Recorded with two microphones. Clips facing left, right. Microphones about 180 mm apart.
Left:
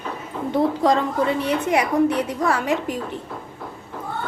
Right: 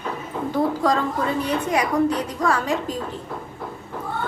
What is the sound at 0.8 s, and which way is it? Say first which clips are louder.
Speech: left 2 dB; 25° left (ahead or behind).